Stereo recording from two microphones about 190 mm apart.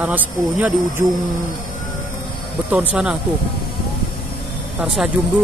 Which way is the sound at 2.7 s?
10° right (ahead or behind).